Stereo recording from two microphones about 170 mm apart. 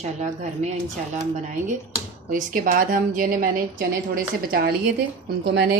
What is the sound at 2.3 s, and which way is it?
A woman's voice, 55° right (ahead or behind).